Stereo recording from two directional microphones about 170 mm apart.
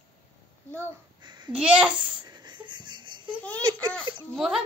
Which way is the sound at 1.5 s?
5° right (ahead or behind).